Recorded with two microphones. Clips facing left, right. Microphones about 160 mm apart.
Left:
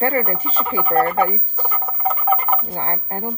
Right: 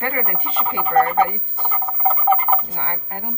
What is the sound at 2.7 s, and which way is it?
Speech, 35° left (ahead or behind).